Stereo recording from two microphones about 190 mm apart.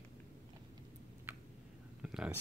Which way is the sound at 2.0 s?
5° right (ahead or behind).